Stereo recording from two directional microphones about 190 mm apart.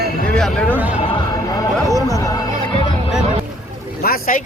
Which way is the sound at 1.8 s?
15° right (ahead or behind).